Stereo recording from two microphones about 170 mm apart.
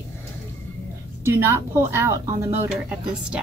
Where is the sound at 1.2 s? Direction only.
15° right (ahead or behind).